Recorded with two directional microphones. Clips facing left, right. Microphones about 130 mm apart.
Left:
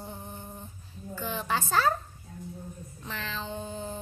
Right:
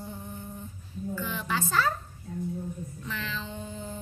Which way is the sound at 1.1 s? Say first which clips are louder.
Left 2 dB; 35° left (ahead or behind).